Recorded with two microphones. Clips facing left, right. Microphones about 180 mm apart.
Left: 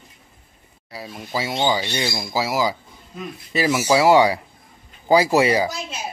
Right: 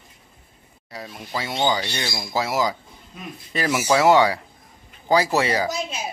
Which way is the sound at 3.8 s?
10° left (ahead or behind).